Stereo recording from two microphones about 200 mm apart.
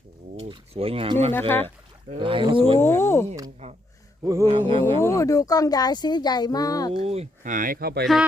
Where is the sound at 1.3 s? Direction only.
10° left (ahead or behind).